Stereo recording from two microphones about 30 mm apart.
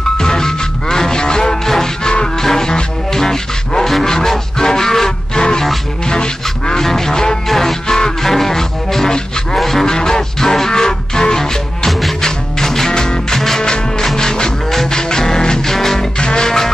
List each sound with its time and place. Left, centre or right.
0.2 s music: centre
2.4 s music: centre
3.1 s a sound: centre
3.9 s music: centre
6.0 s music: left
6.8 s music: centre
7.4 s music: centre
9.6 s a sound: centre
9.8 s music: left
14.1 s music: left
14.7 s music: centre
15.0 s music: left
16.2 s music: left
16.4 s music: centre